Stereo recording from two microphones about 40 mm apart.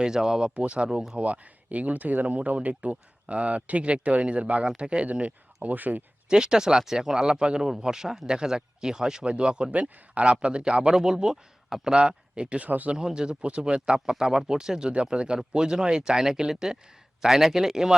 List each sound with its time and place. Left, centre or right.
0.0 s speech: centre
0.5 s speech: right
5.6 s speech: right
6.2 s speech: centre
11.0 s speech: centre
11.9 s speech: right
12.6 s speech: right
12.9 s speech: centre